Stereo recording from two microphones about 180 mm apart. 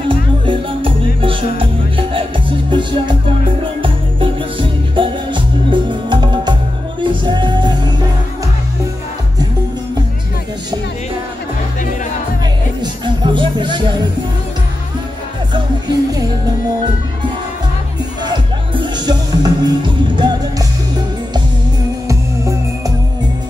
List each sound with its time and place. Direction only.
0.1 s music: 30° right (ahead or behind)
12.8 s music: 25° right (ahead or behind)
18.2 s music: 25° right (ahead or behind)
22.0 s music: 15° right (ahead or behind)